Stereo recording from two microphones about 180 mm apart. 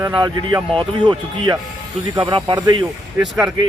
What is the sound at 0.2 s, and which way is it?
Speech, 25° right (ahead or behind).